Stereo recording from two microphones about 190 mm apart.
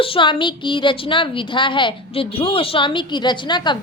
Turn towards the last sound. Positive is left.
turn(degrees=25)  # may be behind; listen again after turning